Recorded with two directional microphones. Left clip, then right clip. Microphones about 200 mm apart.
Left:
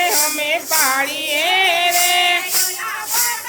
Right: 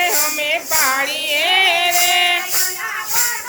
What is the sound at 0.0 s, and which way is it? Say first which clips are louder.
Female singing: even; 10° left (ahead or behind).